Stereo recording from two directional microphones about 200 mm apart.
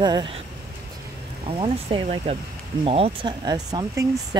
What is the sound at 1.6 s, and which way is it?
Speech, 25° right (ahead or behind).